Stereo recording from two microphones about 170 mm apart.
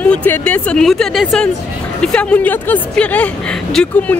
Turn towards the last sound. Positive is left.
turn(degrees=5)  # may be behind; listen again after turning